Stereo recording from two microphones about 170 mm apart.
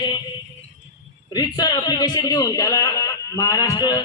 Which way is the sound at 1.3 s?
25° left (ahead or behind).